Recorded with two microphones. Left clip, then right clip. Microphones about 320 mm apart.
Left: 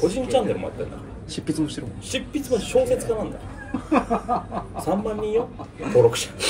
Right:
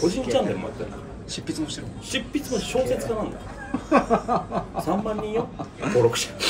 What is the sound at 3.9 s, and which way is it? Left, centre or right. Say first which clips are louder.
Chuckle: right 2 dB; centre.